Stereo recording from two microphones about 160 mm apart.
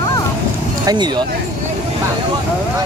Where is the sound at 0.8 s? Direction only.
25° right (ahead or behind).